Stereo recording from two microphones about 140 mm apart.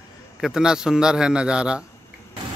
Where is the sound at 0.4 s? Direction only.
5° right (ahead or behind).